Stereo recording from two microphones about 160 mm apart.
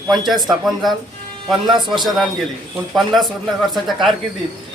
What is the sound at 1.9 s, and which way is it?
A man's voice, centre (ahead or behind).